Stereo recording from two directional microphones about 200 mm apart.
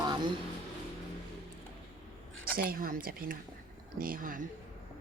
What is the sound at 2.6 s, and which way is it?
Speech, 45° right (ahead or behind).